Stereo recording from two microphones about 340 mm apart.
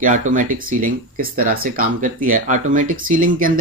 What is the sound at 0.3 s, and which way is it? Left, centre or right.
Speech, right.